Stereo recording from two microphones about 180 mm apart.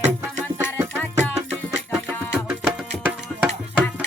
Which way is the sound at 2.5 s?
5° right (ahead or behind).